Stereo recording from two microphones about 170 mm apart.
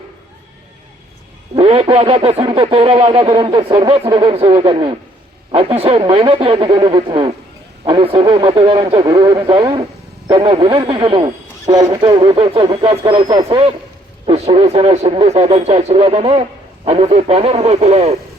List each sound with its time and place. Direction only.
1.5 s a man's voice: 30° right (ahead or behind)
14.3 s speech: 35° right (ahead or behind)